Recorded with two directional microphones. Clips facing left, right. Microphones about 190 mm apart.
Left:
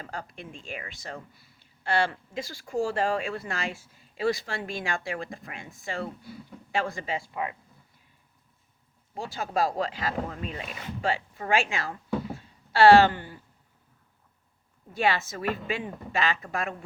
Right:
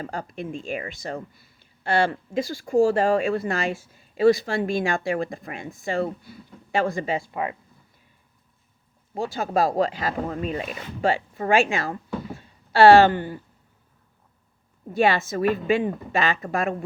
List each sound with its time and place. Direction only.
0.0 s speech: 45° right (ahead or behind)
9.1 s speech: 50° right (ahead or behind)
14.9 s speech: 50° right (ahead or behind)